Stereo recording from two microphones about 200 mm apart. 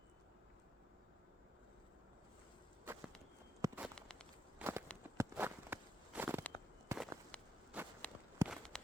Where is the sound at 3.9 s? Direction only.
5° left (ahead or behind).